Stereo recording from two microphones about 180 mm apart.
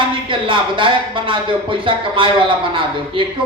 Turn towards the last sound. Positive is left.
turn(degrees=-25)  # may be behind; listen again after turning